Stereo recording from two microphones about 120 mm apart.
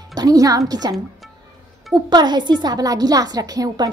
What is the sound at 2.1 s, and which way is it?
A woman's voice, 35° right (ahead or behind).